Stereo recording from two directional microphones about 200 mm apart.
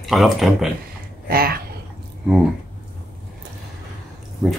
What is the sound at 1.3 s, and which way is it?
Speech, 50° right (ahead or behind).